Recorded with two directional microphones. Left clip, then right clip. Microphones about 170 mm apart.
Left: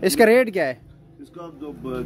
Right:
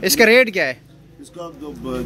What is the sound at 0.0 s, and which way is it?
Speech, 30° left (ahead or behind).